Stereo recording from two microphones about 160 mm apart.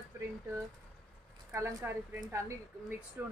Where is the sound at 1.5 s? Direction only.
20° right (ahead or behind).